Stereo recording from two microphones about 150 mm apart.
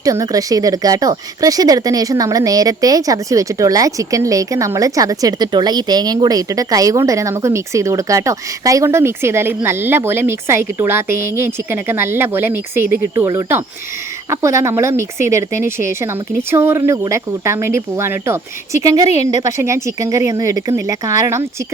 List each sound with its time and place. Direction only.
0.0 s speech: 25° right (ahead or behind)